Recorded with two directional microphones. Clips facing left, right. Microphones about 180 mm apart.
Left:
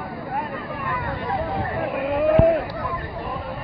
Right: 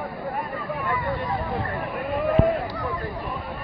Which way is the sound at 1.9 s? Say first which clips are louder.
Left 4 dB; 15° left (ahead or behind).